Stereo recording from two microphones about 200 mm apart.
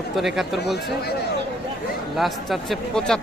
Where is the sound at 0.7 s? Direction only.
50° left (ahead or behind).